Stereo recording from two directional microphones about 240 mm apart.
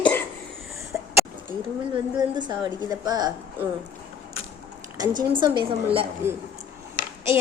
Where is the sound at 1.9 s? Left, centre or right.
Centre.